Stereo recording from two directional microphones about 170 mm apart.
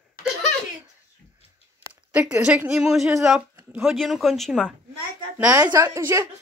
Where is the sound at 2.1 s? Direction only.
5° right (ahead or behind).